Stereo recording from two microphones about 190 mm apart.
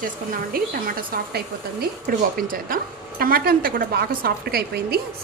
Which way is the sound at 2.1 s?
50° right (ahead or behind).